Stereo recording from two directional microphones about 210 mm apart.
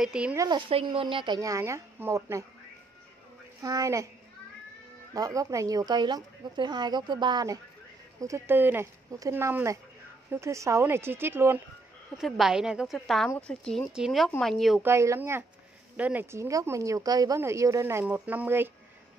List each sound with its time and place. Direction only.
0.0 s a woman's voice: 5° right (ahead or behind)
0.5 s speech: 25° right (ahead or behind)
3.6 s a woman's voice: 15° right (ahead or behind)
5.1 s a woman's voice: 15° right (ahead or behind); by 14.9 s centre (ahead or behind)
14.9 s a woman's voice: 15° right (ahead or behind)